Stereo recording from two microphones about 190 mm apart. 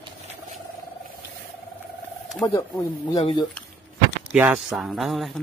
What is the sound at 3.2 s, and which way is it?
Speech, 30° left (ahead or behind).